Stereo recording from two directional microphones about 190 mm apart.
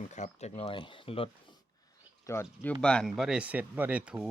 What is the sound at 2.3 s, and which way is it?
Speech, 15° left (ahead or behind).